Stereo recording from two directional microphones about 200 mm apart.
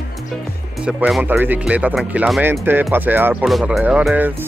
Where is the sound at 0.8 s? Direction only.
5° right (ahead or behind).